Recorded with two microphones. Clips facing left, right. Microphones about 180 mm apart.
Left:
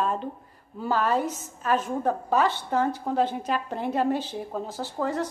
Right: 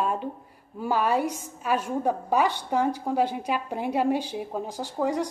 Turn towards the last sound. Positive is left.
turn(degrees=-15)  # may be behind; listen again after turning